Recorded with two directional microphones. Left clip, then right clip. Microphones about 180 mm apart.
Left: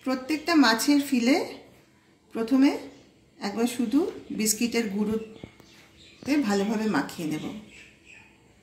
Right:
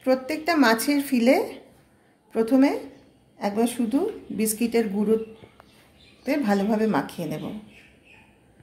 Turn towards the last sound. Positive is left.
turn(degrees=-60)  # may be behind; listen again after turning